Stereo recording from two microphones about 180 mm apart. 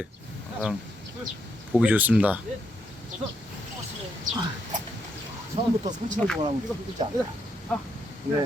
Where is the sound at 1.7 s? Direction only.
10° right (ahead or behind).